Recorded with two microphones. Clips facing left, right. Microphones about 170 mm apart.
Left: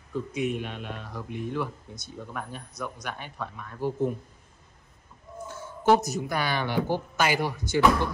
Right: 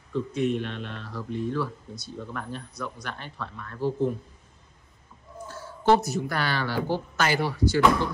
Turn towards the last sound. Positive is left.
turn(degrees=15)  # may be behind; listen again after turning